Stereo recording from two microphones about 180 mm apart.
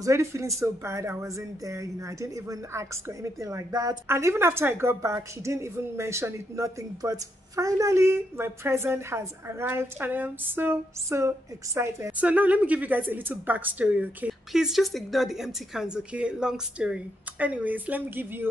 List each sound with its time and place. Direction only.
0.0 s speech: 15° right (ahead or behind)